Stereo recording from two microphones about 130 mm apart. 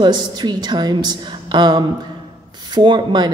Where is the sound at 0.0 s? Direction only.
35° right (ahead or behind).